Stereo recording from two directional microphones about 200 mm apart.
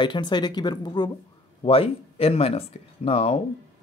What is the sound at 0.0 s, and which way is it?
Speech, 25° left (ahead or behind).